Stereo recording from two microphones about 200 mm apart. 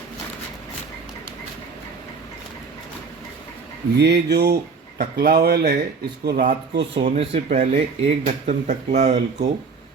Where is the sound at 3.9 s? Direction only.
55° right (ahead or behind).